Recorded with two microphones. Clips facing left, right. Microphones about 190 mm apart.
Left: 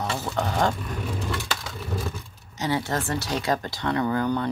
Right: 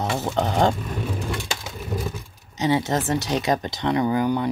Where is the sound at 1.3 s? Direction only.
20° right (ahead or behind).